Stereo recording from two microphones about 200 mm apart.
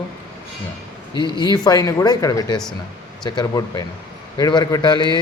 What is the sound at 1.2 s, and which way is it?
Speech, 20° left (ahead or behind).